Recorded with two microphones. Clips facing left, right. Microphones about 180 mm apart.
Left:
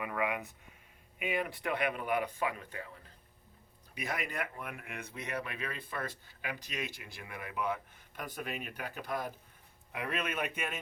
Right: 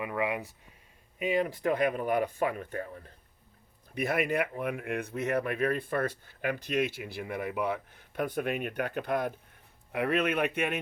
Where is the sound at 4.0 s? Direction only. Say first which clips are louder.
Right 9 dB; 55° right (ahead or behind).